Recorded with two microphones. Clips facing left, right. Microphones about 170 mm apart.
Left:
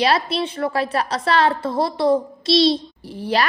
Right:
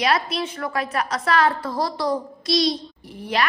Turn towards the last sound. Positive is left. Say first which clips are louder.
# left 4 dB
turn(degrees=30)  # may be behind; listen again after turning